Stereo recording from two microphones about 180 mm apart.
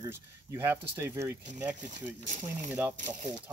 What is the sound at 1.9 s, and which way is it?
Speech, 45° right (ahead or behind).